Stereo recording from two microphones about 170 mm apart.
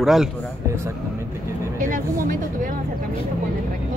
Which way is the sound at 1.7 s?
55° right (ahead or behind).